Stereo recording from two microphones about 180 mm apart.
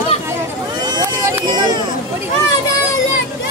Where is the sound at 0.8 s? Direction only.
20° right (ahead or behind).